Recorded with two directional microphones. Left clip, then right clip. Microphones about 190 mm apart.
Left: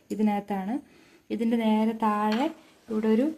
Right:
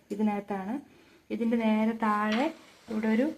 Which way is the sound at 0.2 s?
50° left (ahead or behind).